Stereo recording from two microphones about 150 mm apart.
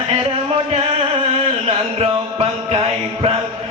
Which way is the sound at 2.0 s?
40° right (ahead or behind).